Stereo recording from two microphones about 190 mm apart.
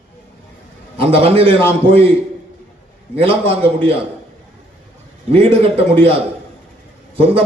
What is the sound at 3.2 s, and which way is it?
Speech, 30° right (ahead or behind).